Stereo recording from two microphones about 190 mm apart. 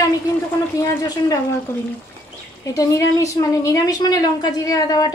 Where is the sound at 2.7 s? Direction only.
20° left (ahead or behind).